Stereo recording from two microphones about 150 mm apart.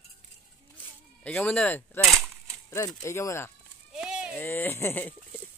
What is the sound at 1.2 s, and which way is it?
Speech, 10° left (ahead or behind).